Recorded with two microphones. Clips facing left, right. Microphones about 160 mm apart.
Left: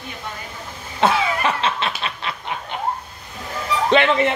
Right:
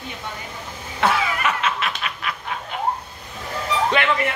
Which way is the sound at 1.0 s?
30° left (ahead or behind).